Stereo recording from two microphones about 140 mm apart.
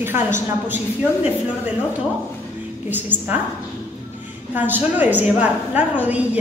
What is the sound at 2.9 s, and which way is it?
Speech, 15° right (ahead or behind).